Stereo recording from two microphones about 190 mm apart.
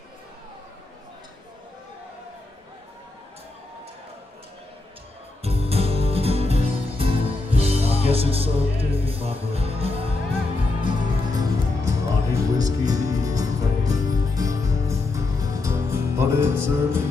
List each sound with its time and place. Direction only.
5.4 s music: 30° right (ahead or behind)
8.1 s speech: 30° right (ahead or behind)
11.3 s music: 20° right (ahead or behind)